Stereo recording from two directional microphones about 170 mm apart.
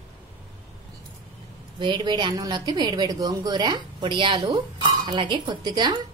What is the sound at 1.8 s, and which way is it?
A woman's voice, 25° right (ahead or behind).